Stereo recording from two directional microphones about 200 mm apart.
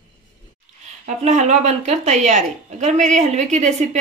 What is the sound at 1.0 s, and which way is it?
A woman's voice, 35° right (ahead or behind).